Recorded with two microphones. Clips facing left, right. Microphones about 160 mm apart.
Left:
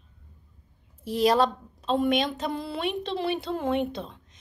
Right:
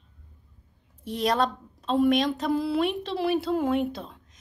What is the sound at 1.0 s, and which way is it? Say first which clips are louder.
A woman's voice: left 3 dB; centre (ahead or behind).